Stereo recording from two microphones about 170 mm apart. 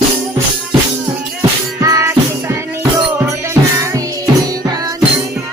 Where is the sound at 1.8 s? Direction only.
15° right (ahead or behind).